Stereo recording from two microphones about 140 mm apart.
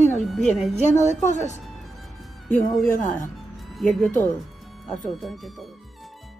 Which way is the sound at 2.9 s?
65° left (ahead or behind).